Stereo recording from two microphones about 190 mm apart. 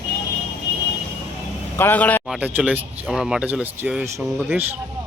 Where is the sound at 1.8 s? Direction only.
10° left (ahead or behind).